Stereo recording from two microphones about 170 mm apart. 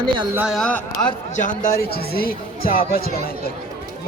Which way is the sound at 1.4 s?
50° left (ahead or behind).